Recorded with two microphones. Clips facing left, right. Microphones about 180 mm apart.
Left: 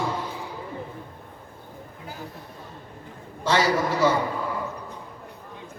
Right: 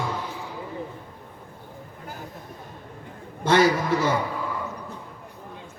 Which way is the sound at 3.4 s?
55° right (ahead or behind).